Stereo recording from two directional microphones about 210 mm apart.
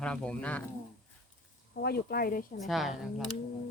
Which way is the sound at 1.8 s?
50° left (ahead or behind).